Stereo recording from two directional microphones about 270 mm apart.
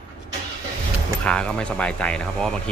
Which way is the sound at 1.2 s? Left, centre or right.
Centre.